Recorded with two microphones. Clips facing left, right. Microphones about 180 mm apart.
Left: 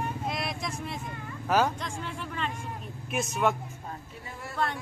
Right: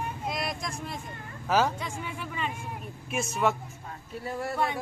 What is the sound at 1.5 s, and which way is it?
Speech, 5° right (ahead or behind).